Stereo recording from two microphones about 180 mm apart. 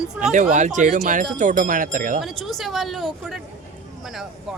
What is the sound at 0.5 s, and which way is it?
Speech, 45° right (ahead or behind).